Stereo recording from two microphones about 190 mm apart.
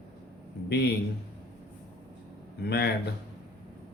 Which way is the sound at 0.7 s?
60° left (ahead or behind).